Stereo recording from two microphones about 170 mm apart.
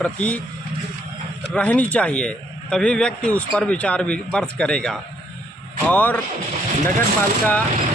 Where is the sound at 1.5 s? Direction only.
10° left (ahead or behind).